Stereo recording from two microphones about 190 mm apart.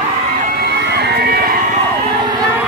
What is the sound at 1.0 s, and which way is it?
Music, 55° right (ahead or behind).